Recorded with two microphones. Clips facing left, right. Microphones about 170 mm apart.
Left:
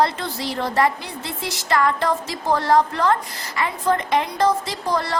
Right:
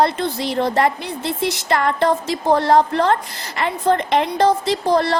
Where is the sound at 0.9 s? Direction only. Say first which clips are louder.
Right 7 dB; 65° right (ahead or behind).